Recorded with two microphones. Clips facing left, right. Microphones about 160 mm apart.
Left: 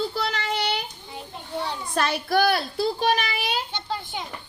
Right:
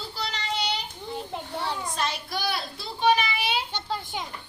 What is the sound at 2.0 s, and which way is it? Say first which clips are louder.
Speech: left 8 dB; 60° left (ahead or behind).